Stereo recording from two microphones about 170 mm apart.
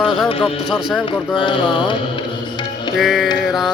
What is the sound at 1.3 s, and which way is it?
Speech, 30° left (ahead or behind).